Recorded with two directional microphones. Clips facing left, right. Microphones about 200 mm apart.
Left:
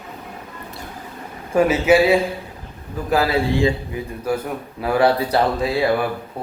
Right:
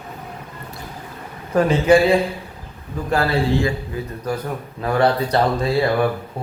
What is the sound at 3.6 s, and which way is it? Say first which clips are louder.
Speech: left 3 dB; 20° left (ahead or behind).